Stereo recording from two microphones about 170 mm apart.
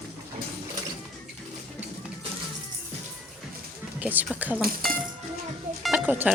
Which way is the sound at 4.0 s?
10° right (ahead or behind).